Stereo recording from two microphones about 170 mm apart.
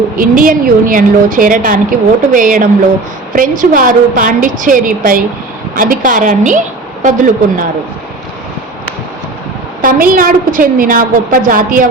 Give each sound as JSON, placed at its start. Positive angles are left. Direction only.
{"t": 0.2, "sound": "a woman's voice", "side_deg": -55}
{"t": 9.8, "sound": "a woman's voice", "side_deg": -55}